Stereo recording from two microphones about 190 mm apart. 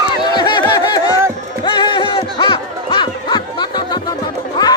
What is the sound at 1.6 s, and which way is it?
Music, 25° left (ahead or behind).